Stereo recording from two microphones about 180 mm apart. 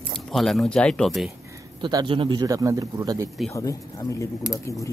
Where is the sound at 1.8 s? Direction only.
25° right (ahead or behind).